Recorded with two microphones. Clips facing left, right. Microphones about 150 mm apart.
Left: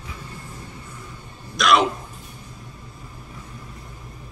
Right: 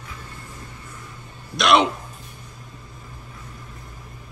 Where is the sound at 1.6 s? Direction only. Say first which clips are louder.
Right 1 dB; centre (ahead or behind).